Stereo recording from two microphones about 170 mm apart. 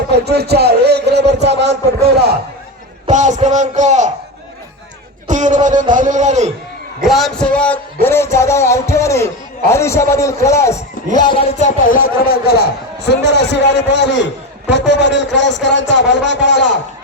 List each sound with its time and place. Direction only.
0.1 s a man's voice: 70° right (ahead or behind)
3.1 s a man's voice: 45° right (ahead or behind)
5.3 s a man's voice: 45° right (ahead or behind)
7.0 s a man's voice: centre (ahead or behind); by 11.5 s 30° left (ahead or behind)
11.6 s speech: 50° left (ahead or behind)
13.1 s a man's voice: 90° left